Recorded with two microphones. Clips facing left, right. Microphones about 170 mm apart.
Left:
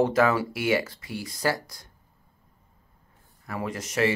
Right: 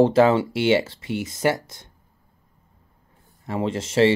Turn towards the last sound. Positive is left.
turn(degrees=-25)  # may be behind; listen again after turning